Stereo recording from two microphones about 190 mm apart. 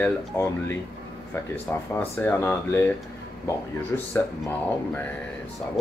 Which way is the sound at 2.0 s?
10° left (ahead or behind).